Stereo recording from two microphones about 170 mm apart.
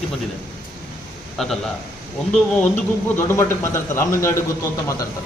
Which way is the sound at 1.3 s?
Centre (ahead or behind).